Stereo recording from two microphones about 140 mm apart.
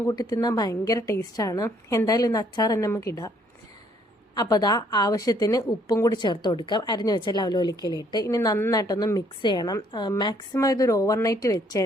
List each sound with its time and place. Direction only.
0.1 s a woman's voice: 25° left (ahead or behind)
4.4 s a woman's voice: 25° left (ahead or behind)